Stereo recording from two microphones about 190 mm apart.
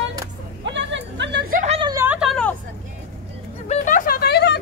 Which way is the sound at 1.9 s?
15° right (ahead or behind).